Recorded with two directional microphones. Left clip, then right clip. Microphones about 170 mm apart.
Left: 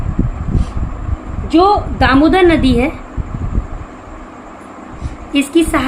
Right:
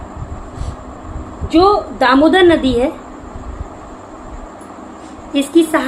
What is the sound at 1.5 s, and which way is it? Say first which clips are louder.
A woman's voice: left 1 dB; 55° left (ahead or behind).